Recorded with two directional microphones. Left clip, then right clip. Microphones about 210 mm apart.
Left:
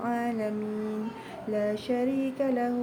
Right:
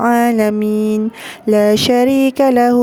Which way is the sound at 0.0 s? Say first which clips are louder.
Right 17 dB; 55° right (ahead or behind).